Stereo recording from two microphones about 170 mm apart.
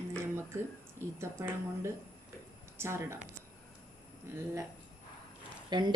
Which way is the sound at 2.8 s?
15° right (ahead or behind).